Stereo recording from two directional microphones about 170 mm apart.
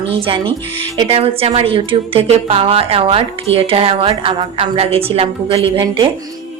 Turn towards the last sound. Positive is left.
turn(degrees=-30)  # may be behind; listen again after turning